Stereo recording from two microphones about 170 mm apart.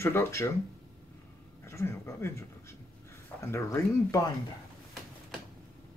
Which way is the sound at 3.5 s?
20° left (ahead or behind).